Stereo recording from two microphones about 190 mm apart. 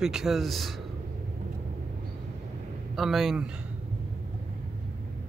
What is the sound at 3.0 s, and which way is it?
Speech, centre (ahead or behind).